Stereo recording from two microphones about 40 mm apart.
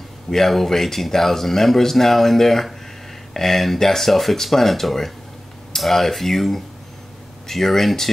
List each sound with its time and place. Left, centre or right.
0.3 s speech: centre